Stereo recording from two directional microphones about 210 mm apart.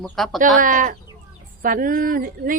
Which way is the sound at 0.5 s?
40° right (ahead or behind).